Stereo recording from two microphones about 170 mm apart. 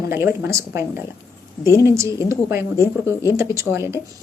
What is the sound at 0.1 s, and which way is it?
A woman's voice, 15° right (ahead or behind).